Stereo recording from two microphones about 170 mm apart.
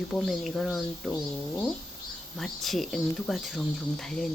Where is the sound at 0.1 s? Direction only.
Centre (ahead or behind).